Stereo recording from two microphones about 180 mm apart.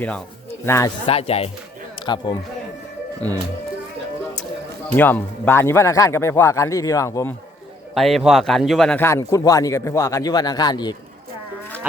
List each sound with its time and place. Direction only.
0.6 s speech: 15° left (ahead or behind)
1.0 s speech: 35° left (ahead or behind)
4.9 s a man's voice: 10° left (ahead or behind)
7.9 s a man's voice: centre (ahead or behind)
9.0 s a man's voice: 15° left (ahead or behind)